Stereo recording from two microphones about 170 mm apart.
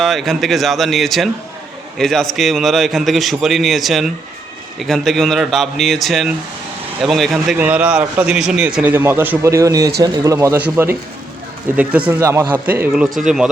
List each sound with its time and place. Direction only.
0.0 s a man's voice: centre (ahead or behind); by 12.5 s 15° right (ahead or behind)
13.2 s a man's voice: 5° right (ahead or behind)